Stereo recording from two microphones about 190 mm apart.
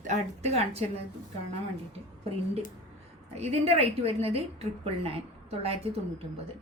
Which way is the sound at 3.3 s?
35° right (ahead or behind).